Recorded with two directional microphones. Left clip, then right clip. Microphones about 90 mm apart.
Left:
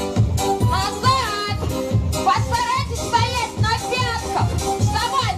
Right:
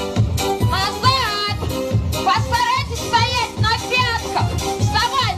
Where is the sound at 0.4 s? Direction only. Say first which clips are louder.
Right 1 dB; 20° right (ahead or behind).